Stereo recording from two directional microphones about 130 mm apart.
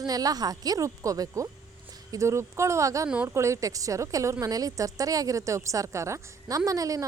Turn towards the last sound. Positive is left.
turn(degrees=-25)  # may be behind; listen again after turning